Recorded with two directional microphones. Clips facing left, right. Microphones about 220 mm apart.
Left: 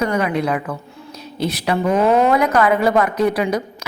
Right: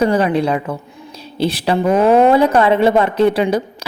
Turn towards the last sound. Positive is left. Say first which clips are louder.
# right 4 dB
turn(degrees=-30)  # may be behind; listen again after turning